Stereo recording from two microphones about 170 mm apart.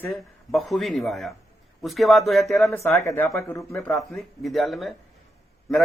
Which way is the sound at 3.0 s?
15° left (ahead or behind).